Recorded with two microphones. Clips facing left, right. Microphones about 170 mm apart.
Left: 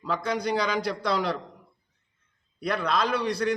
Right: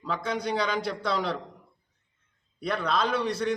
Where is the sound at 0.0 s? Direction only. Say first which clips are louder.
Left 2 dB; centre (ahead or behind).